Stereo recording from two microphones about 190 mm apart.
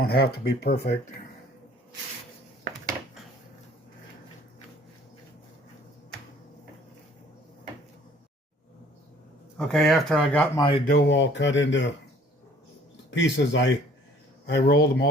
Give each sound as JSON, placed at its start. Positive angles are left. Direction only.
{"t": 0.0, "sound": "speech", "side_deg": 55}
{"t": 9.6, "sound": "speech", "side_deg": 5}
{"t": 10.6, "sound": "speech", "side_deg": 30}
{"t": 10.8, "sound": "speech", "side_deg": 60}
{"t": 13.1, "sound": "speech", "side_deg": 70}
{"t": 14.4, "sound": "speech", "side_deg": 60}